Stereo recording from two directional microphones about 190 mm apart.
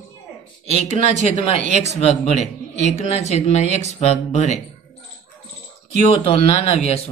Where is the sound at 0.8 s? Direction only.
35° left (ahead or behind).